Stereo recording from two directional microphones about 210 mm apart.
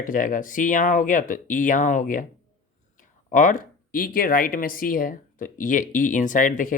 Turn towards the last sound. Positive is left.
turn(degrees=40)  # may be behind; listen again after turning